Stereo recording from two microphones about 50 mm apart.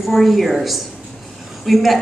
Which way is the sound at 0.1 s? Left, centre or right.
Centre.